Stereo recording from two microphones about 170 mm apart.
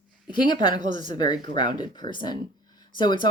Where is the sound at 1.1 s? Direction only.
25° left (ahead or behind).